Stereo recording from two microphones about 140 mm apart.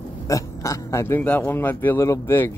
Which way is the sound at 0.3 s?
25° left (ahead or behind).